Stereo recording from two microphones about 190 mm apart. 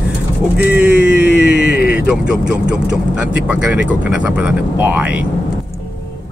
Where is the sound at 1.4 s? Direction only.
60° left (ahead or behind).